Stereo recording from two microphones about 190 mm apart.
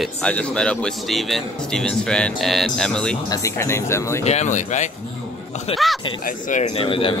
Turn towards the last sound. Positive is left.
turn(degrees=25)  # may be behind; listen again after turning